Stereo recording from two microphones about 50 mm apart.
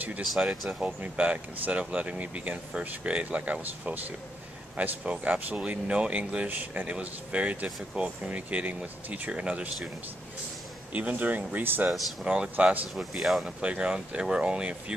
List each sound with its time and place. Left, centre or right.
0.2 s speech: centre
0.7 s speech: right
10.9 s speech: right
11.6 s speech: right
12.6 s speech: right
12.9 s speech: centre
13.6 s speech: right